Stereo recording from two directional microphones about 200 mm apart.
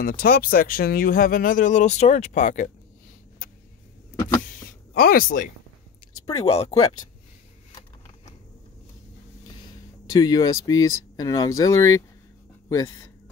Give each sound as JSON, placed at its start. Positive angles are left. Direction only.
{"t": 0.0, "sound": "speech", "side_deg": 45}
{"t": 4.9, "sound": "speech", "side_deg": 45}
{"t": 6.3, "sound": "speech", "side_deg": 30}
{"t": 10.0, "sound": "speech", "side_deg": 20}